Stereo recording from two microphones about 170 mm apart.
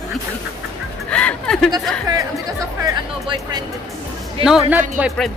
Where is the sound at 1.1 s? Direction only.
5° left (ahead or behind).